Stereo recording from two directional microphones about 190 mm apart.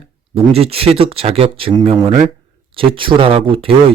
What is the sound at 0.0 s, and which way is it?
Speech, 30° right (ahead or behind).